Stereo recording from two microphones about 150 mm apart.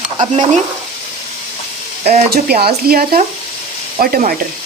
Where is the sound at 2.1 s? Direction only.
90° right.